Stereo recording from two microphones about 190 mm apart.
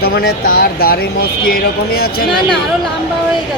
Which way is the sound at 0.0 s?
55° left (ahead or behind).